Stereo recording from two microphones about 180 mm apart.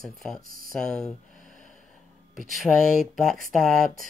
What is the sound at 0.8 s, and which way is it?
Speech, 5° left (ahead or behind).